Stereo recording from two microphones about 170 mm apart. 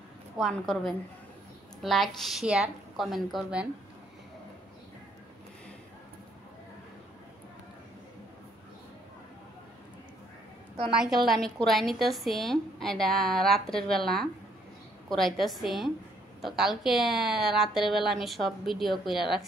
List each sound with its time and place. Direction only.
0.4 s a woman's voice: centre (ahead or behind)
10.9 s a woman's voice: centre (ahead or behind)